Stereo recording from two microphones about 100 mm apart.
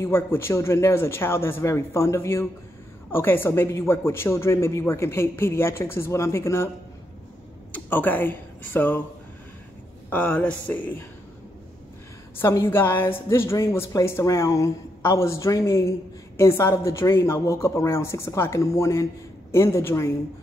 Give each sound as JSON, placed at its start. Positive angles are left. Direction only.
{"t": 0.0, "sound": "speech", "side_deg": 25}
{"t": 7.7, "sound": "speech", "side_deg": 20}
{"t": 10.0, "sound": "speech", "side_deg": 15}
{"t": 12.4, "sound": "speech", "side_deg": 25}